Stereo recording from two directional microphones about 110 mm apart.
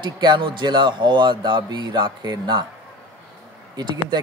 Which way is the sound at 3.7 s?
40° right (ahead or behind).